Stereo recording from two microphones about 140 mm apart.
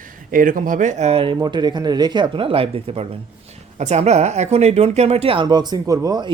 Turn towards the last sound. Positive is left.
turn(degrees=-30)  # may be behind; listen again after turning